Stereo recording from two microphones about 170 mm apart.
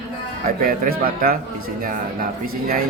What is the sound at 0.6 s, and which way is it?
Mantra, 55° right (ahead or behind).